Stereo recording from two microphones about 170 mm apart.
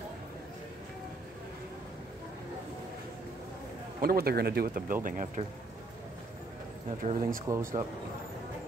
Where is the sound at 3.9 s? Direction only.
60° right (ahead or behind).